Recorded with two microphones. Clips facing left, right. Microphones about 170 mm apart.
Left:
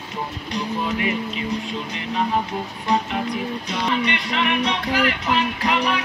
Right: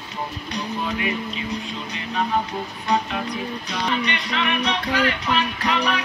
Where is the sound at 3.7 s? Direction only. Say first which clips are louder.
Left 2 dB; 25° left (ahead or behind).